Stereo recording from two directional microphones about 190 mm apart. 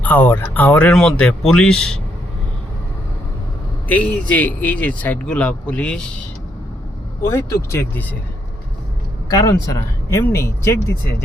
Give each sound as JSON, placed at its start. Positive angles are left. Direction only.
{"t": 0.0, "sound": "speech", "side_deg": 10}
{"t": 3.8, "sound": "speech", "side_deg": 10}
{"t": 7.2, "sound": "speech", "side_deg": 15}
{"t": 9.3, "sound": "speech", "side_deg": 20}